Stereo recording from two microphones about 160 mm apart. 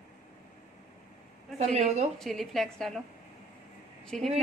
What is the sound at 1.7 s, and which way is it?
Speech, 40° right (ahead or behind).